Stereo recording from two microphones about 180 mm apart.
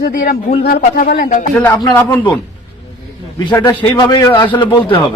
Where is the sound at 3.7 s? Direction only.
10° left (ahead or behind).